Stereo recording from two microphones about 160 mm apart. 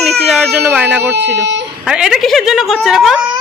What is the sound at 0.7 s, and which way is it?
A woman's voice, 10° right (ahead or behind).